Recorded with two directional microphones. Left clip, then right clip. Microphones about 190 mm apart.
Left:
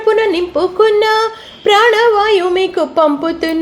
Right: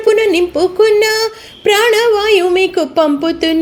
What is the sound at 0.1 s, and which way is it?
Speech, 45° right (ahead or behind).